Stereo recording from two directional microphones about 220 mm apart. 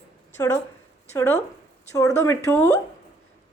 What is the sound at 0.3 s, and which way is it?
A woman's voice, 15° left (ahead or behind).